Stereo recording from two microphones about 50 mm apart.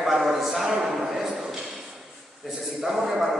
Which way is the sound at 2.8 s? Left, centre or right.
Centre.